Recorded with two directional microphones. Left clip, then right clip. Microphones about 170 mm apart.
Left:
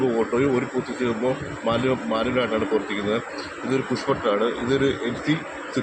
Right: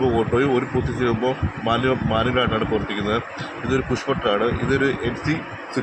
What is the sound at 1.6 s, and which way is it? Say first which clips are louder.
Speech: right 2 dB; 30° right (ahead or behind).